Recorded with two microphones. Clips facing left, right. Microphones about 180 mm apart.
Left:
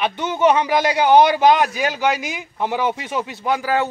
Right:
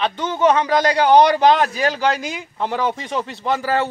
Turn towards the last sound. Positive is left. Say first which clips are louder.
# even
turn(degrees=0)  # may be behind; listen again after turning